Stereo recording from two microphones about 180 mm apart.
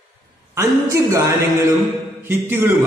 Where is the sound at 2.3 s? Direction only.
10° right (ahead or behind).